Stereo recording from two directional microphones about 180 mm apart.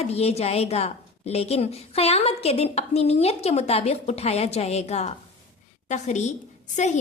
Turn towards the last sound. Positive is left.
turn(degrees=40)  # may be behind; listen again after turning